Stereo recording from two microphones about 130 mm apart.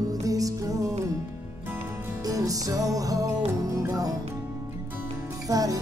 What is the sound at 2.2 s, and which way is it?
Music, 25° right (ahead or behind).